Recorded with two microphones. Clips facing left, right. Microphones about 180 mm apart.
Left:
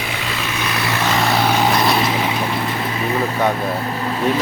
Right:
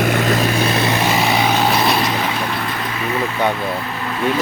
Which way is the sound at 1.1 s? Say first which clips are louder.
Right 1 dB; 5° right (ahead or behind).